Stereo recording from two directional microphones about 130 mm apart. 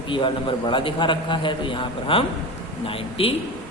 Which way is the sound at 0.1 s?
40° left (ahead or behind).